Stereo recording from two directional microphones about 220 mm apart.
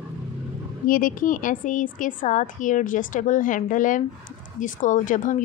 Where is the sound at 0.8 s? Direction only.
40° left (ahead or behind).